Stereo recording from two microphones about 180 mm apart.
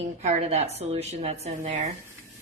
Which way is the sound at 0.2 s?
35° right (ahead or behind).